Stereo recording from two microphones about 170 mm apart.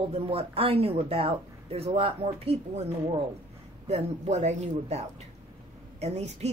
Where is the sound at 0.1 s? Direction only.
35° right (ahead or behind).